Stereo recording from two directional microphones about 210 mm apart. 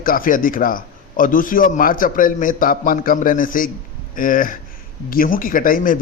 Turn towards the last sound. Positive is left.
turn(degrees=40)  # may be behind; listen again after turning